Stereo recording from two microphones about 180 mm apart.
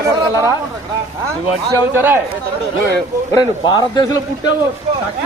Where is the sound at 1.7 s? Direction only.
10° right (ahead or behind).